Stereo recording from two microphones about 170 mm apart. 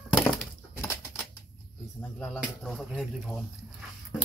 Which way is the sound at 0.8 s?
15° left (ahead or behind).